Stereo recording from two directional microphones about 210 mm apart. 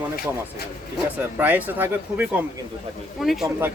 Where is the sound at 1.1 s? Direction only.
10° right (ahead or behind).